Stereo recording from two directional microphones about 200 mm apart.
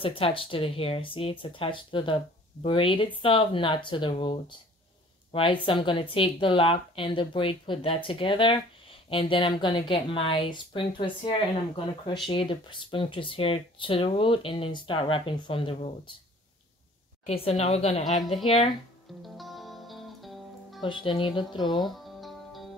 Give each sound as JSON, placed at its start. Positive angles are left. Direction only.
{"t": 0.0, "sound": "a woman's voice", "side_deg": 25}
{"t": 17.3, "sound": "speech", "side_deg": 30}
{"t": 19.2, "sound": "music", "side_deg": 0}
{"t": 20.8, "sound": "a woman's voice", "side_deg": 25}
{"t": 21.8, "sound": "music", "side_deg": 0}